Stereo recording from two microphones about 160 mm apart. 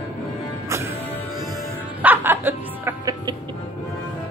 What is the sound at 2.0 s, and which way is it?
Music, 10° right (ahead or behind).